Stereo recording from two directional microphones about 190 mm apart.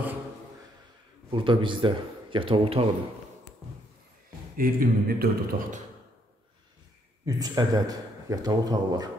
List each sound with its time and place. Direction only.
1.3 s a man's voice: 25° right (ahead or behind)
4.6 s speech: 50° right (ahead or behind)
7.2 s a man's voice: 20° right (ahead or behind)